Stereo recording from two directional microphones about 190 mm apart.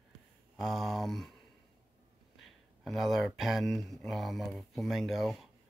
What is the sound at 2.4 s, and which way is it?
Speech, centre (ahead or behind).